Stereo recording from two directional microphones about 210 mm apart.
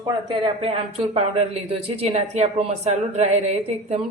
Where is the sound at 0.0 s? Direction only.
20° right (ahead or behind).